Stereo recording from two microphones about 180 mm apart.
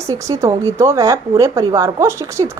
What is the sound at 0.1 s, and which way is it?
A woman's voice, 15° right (ahead or behind).